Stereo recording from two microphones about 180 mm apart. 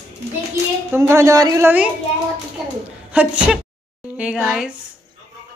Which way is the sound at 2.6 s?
Centre (ahead or behind).